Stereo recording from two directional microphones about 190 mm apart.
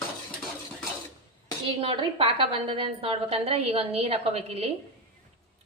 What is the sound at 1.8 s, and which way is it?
A woman's voice, 30° right (ahead or behind).